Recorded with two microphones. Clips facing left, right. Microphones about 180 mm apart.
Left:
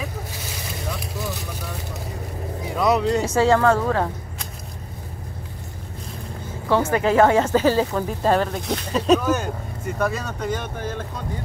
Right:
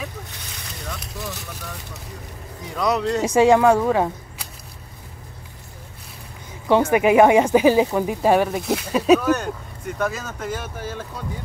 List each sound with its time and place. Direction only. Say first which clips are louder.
0.8 s vehicle: left 2 dB; centre (ahead or behind)
2.7 s speech: left 2 dB; centre (ahead or behind)
3.2 s speech: right 3 dB; 15° right (ahead or behind)
6.7 s speech: right 3 dB; 15° right (ahead or behind)